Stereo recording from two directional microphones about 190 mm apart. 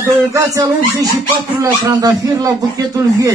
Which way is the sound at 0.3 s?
15° right (ahead or behind).